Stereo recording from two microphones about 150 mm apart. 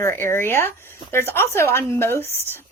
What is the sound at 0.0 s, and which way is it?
Speech, 15° left (ahead or behind).